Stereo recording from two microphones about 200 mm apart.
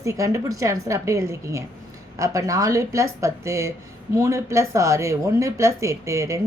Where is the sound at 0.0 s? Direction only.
15° right (ahead or behind).